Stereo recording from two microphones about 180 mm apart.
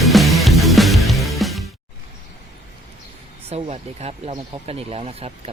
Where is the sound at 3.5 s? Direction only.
35° right (ahead or behind).